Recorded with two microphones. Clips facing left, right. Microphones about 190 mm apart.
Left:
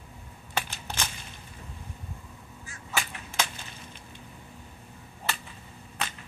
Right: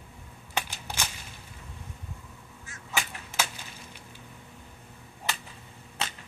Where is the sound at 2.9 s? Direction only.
15° right (ahead or behind).